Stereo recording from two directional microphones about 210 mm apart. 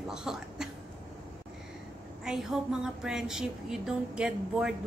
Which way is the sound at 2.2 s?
5° right (ahead or behind).